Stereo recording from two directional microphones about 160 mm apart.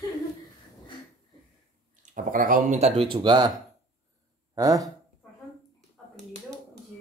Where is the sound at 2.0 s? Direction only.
55° right (ahead or behind).